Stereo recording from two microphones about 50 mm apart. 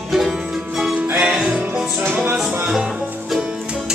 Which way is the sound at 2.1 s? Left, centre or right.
Right.